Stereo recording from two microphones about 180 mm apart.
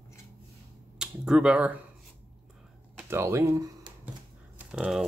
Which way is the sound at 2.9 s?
15° right (ahead or behind).